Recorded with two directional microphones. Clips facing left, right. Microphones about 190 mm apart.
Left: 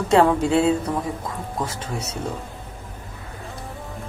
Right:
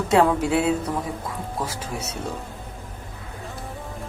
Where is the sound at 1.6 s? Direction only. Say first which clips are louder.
Left 1 dB; 10° right (ahead or behind).